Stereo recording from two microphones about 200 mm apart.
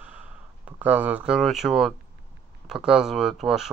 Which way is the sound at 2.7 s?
5° right (ahead or behind).